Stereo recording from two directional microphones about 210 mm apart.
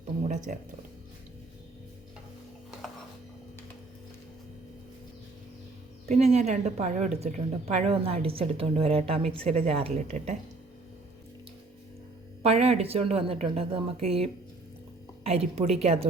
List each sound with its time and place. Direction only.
0.5 s speech: 40° right (ahead or behind)
6.1 s a woman's voice: 30° right (ahead or behind)
12.4 s a woman's voice: 30° right (ahead or behind)